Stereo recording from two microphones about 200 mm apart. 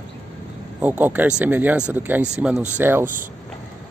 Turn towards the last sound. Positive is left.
turn(degrees=-40)  # may be behind; listen again after turning